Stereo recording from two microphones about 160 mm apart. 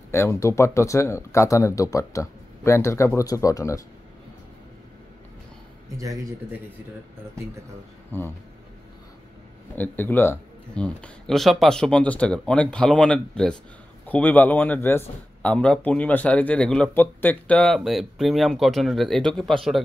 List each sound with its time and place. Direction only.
0.1 s speech: 15° left (ahead or behind)
8.1 s a man's voice: 15° left (ahead or behind)
9.8 s a man's voice: 10° left (ahead or behind)